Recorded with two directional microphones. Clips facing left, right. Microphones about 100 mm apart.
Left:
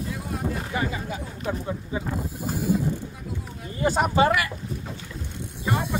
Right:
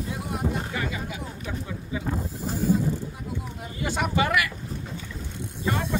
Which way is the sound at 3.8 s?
35° left (ahead or behind).